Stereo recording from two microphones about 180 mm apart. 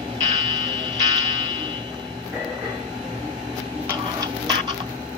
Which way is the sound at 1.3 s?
25° right (ahead or behind).